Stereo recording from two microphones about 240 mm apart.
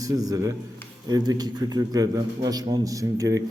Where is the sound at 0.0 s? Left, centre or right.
Centre.